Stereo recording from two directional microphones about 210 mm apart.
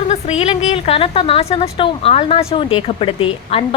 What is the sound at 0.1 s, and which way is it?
A woman's voice, 30° left (ahead or behind).